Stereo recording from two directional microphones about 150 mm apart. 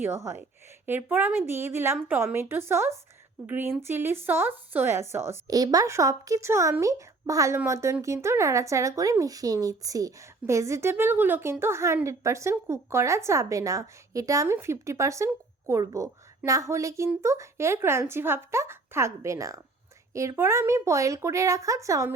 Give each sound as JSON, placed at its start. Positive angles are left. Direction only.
{"t": 0.9, "sound": "a woman's voice", "side_deg": -15}